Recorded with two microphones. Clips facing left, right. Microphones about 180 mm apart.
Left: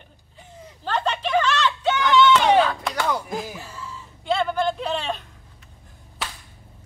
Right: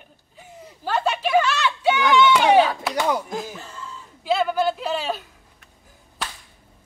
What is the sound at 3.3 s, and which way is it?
Slap, 5° left (ahead or behind).